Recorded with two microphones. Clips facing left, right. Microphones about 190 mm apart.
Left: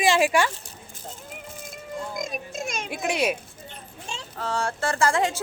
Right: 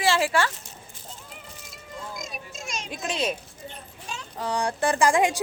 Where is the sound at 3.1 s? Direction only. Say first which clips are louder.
Left 3 dB; 10° left (ahead or behind).